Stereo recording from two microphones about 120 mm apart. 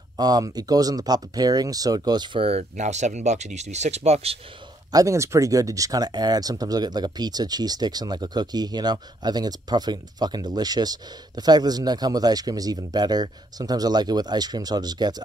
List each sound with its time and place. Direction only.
0.2 s speech: 35° right (ahead or behind)
2.8 s speech: 80° right; by 4.4 s 60° right (ahead or behind)
4.9 s speech: 25° right (ahead or behind)